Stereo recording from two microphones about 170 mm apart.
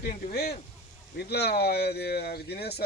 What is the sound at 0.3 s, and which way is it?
Speech, 65° left (ahead or behind).